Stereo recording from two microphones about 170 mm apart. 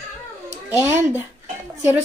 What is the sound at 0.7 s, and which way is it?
Speech, 15° right (ahead or behind).